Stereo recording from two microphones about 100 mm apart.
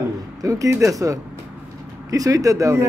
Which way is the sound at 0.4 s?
35° right (ahead or behind).